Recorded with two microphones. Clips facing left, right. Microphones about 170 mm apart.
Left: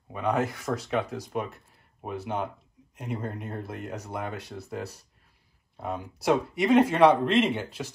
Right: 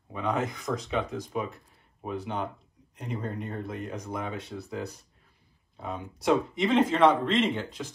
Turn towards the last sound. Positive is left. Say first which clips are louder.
# left 1 dB
turn(degrees=10)  # may be behind; listen again after turning